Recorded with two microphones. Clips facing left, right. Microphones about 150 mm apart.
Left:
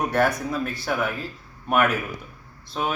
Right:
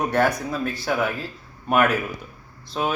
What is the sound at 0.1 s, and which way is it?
Speech, centre (ahead or behind).